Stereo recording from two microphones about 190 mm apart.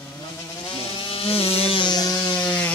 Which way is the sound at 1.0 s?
30° left (ahead or behind).